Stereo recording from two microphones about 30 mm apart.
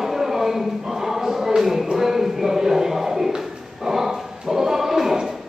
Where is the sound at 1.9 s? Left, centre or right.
Centre.